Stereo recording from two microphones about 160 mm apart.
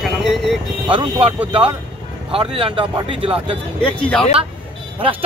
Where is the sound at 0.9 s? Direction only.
30° right (ahead or behind).